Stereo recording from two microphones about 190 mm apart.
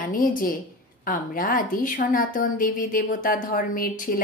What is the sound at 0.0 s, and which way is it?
A woman's voice, 45° left (ahead or behind).